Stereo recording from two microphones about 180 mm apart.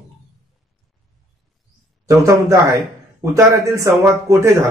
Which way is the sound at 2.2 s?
15° right (ahead or behind).